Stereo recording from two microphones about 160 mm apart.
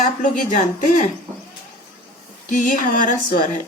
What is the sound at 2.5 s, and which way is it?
Speech, 55° left (ahead or behind).